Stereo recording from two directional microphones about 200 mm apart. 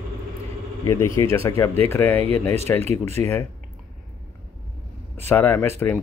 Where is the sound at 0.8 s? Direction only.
15° left (ahead or behind).